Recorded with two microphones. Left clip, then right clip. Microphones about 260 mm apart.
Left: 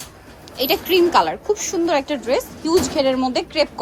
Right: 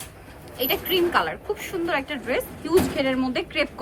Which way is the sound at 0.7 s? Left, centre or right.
Centre.